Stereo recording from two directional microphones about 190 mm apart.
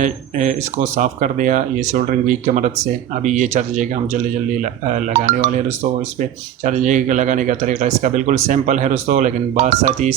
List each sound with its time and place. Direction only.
0.0 s speech: 40° right (ahead or behind)
5.2 s speech: 45° right (ahead or behind)